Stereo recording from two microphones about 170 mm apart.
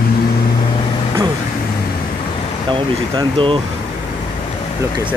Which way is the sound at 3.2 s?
30° right (ahead or behind).